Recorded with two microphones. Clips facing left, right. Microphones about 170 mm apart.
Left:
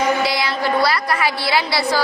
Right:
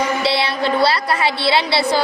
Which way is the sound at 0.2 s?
30° right (ahead or behind).